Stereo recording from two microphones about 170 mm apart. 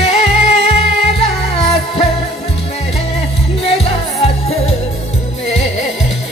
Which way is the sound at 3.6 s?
35° left (ahead or behind).